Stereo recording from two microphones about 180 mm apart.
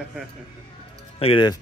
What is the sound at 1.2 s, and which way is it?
Speech, 30° left (ahead or behind).